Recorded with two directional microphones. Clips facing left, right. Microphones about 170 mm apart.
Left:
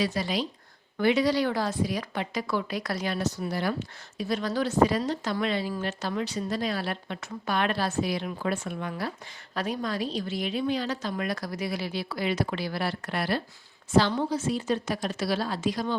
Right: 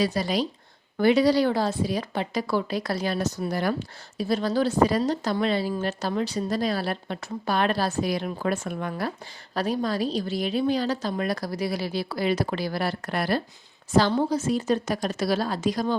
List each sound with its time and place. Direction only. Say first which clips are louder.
0.0 s a woman's voice: right 3 dB; 35° right (ahead or behind)
9.6 s a woman's voice: right 4 dB; 35° right (ahead or behind)